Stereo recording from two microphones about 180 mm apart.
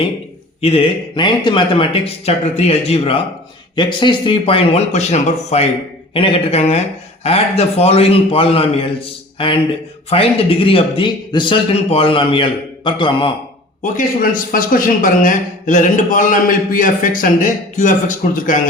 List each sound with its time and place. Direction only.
0.6 s a man's voice: 30° left (ahead or behind)
13.8 s a man's voice: 50° left (ahead or behind)